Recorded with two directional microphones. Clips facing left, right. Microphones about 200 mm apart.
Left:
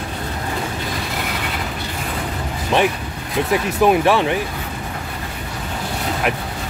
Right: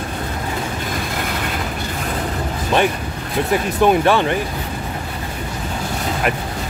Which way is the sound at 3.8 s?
Centre (ahead or behind).